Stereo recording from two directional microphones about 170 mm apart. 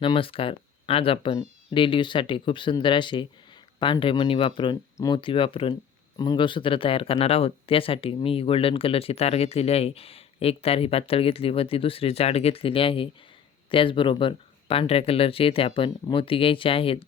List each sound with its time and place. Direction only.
0.0 s speech: 30° left (ahead or behind)